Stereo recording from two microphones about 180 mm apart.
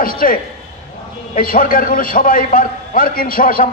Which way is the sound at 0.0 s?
50° left (ahead or behind).